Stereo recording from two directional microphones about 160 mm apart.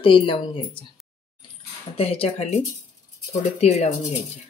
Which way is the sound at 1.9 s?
40° left (ahead or behind).